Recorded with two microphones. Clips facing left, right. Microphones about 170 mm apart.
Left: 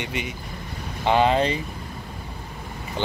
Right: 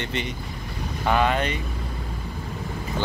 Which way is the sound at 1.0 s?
30° left (ahead or behind).